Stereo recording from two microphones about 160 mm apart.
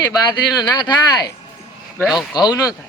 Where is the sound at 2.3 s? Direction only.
25° left (ahead or behind).